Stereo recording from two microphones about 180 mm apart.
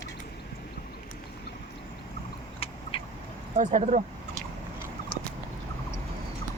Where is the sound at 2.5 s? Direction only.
30° left (ahead or behind).